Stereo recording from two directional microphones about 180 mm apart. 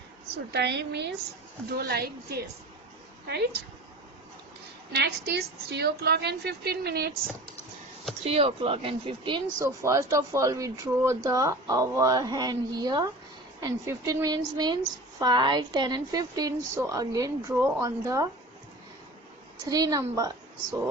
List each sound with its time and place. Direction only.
0.5 s a woman's voice: 70° right (ahead or behind)
1.7 s a woman's voice: 60° right (ahead or behind)
4.9 s a woman's voice: 65° right (ahead or behind)
8.2 s speech: 35° right (ahead or behind)
9.6 s a woman's voice: 15° right (ahead or behind)
19.6 s a woman's voice: 20° right (ahead or behind)